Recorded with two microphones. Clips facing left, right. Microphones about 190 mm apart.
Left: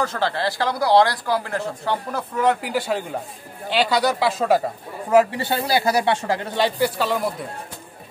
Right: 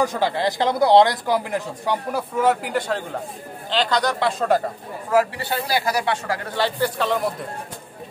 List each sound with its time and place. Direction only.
0.0 s speech: 15° right (ahead or behind); by 4.6 s 5° left (ahead or behind)
5.1 s speech: 20° left (ahead or behind)
7.0 s speech: centre (ahead or behind)